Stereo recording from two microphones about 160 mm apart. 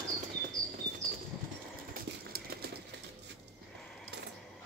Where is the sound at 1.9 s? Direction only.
70° right (ahead or behind).